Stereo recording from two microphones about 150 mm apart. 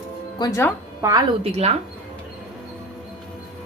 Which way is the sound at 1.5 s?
45° right (ahead or behind).